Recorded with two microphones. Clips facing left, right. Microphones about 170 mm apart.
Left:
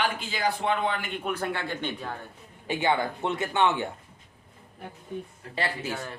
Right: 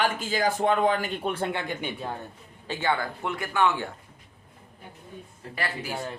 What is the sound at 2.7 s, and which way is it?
Speech, 20° left (ahead or behind).